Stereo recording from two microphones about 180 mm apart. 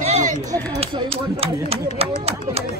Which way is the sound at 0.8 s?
30° right (ahead or behind).